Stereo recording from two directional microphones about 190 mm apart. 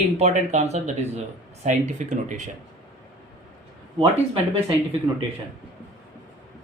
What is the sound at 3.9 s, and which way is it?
Speech, 30° right (ahead or behind).